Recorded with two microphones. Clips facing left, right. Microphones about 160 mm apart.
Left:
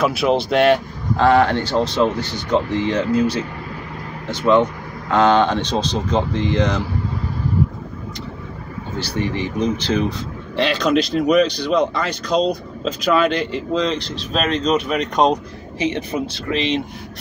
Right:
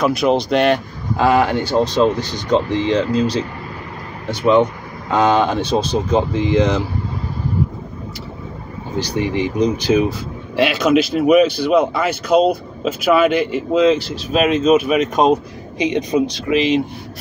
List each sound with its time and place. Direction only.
0.0 s speech: centre (ahead or behind)
1.1 s speech: 10° right (ahead or behind)
4.3 s speech: 15° right (ahead or behind)
8.9 s speech: 15° right (ahead or behind)
15.8 s speech: 15° right (ahead or behind)
16.5 s speech: centre (ahead or behind)